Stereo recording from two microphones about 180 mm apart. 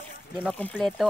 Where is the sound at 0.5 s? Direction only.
5° left (ahead or behind).